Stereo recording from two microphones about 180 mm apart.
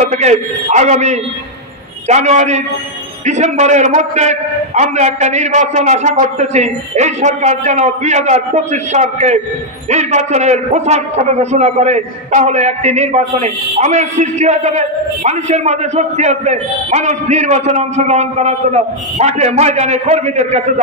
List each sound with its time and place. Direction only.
0.1 s a man's voice: 40° right (ahead or behind)